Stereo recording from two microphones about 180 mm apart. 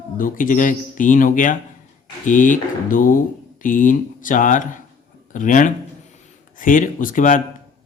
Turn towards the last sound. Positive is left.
turn(degrees=45)  # may be behind; listen again after turning